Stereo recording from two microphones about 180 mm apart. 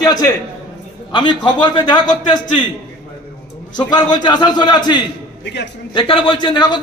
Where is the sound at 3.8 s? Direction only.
25° left (ahead or behind).